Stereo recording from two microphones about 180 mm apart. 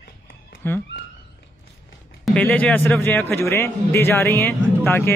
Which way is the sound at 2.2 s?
10° left (ahead or behind).